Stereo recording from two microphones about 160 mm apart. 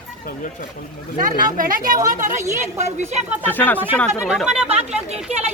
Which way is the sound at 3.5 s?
10° left (ahead or behind).